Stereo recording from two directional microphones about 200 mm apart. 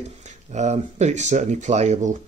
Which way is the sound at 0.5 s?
35° right (ahead or behind).